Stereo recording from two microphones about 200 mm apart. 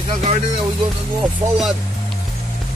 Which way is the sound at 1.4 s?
30° right (ahead or behind).